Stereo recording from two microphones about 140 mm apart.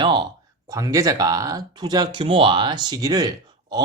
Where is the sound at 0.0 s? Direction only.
35° right (ahead or behind).